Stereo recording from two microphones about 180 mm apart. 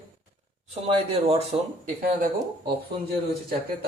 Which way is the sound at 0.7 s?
35° right (ahead or behind).